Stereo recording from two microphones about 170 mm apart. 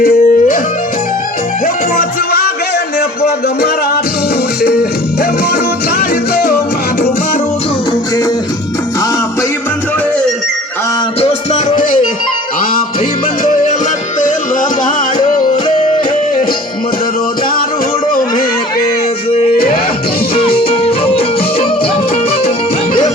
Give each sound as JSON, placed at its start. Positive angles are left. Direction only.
{"t": 0.0, "sound": "music", "side_deg": 60}
{"t": 1.6, "sound": "music", "side_deg": 60}
{"t": 4.6, "sound": "music", "side_deg": 65}
{"t": 6.0, "sound": "music", "side_deg": 65}
{"t": 11.2, "sound": "music", "side_deg": 35}
{"t": 13.4, "sound": "music", "side_deg": 50}
{"t": 19.5, "sound": "music", "side_deg": 60}
{"t": 20.3, "sound": "music", "side_deg": 35}